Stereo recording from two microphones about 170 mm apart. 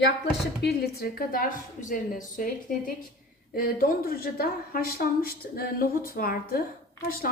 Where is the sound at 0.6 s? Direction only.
65° left (ahead or behind).